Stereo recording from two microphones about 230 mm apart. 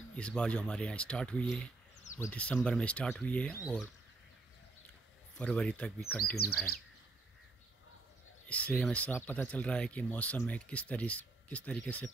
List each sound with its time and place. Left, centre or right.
0.1 s speech: centre
5.4 s speech: centre
6.3 s speech: left
8.5 s speech: centre